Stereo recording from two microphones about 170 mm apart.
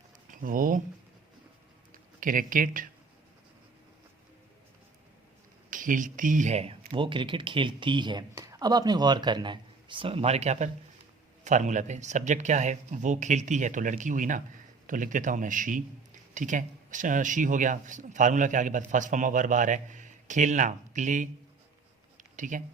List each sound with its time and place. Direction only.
0.3 s speech: 55° right (ahead or behind)
2.2 s speech: 50° right (ahead or behind)
5.7 s speech: 50° right (ahead or behind)
22.2 s a sound: 50° right (ahead or behind)